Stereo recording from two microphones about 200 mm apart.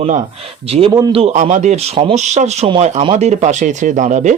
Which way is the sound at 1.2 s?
35° right (ahead or behind).